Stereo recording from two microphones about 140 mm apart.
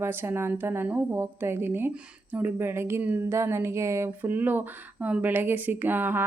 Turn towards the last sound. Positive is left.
turn(degrees=-15)  # may be behind; listen again after turning